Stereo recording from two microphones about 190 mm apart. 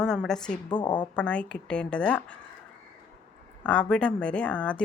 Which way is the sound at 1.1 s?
5° left (ahead or behind).